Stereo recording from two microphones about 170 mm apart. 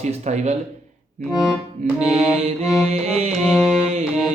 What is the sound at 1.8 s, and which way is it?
Music, 45° right (ahead or behind).